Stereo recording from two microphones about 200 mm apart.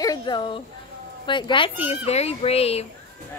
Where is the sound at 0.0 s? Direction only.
20° left (ahead or behind).